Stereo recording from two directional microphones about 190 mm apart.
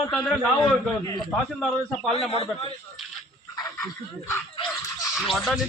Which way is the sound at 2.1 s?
30° left (ahead or behind).